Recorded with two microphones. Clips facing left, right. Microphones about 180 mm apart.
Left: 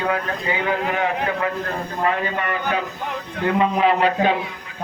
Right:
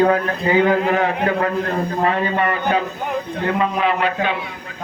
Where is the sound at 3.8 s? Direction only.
35° left (ahead or behind).